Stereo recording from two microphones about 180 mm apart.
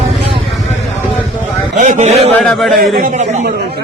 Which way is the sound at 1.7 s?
45° right (ahead or behind).